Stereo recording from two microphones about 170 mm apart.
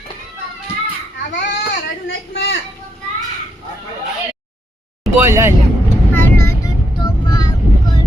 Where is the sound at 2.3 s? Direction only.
80° left.